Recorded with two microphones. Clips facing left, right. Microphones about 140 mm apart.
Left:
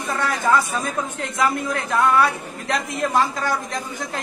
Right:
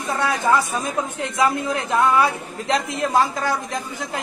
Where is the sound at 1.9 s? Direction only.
20° right (ahead or behind).